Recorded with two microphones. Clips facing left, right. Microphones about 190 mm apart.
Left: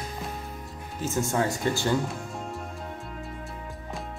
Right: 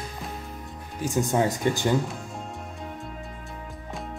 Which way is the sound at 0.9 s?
15° right (ahead or behind).